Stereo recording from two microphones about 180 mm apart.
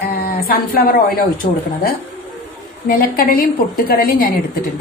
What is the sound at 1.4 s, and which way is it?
Speech, 60° left (ahead or behind).